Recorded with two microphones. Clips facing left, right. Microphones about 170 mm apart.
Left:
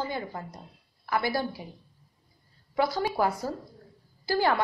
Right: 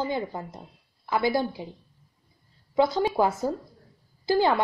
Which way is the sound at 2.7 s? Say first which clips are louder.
Right 4 dB; 20° right (ahead or behind).